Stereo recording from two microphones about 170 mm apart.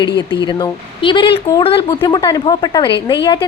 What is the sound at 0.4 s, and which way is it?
A woman's voice, 25° left (ahead or behind).